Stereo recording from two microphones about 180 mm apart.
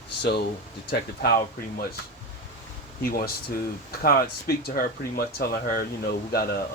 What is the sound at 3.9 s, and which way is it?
Speech, 55° left (ahead or behind).